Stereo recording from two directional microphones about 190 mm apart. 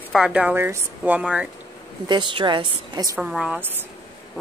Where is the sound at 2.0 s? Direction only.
25° right (ahead or behind).